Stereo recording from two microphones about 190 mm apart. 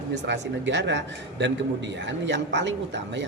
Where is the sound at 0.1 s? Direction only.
65° right (ahead or behind).